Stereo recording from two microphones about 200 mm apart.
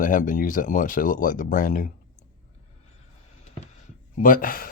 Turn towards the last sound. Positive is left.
turn(degrees=45)  # may be behind; listen again after turning